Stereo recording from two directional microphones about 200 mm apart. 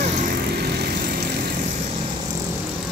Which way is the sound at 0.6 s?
55° right (ahead or behind).